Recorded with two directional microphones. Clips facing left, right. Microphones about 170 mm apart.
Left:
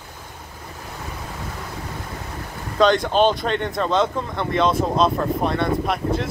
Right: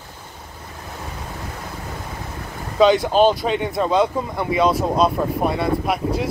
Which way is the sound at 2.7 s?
5° right (ahead or behind).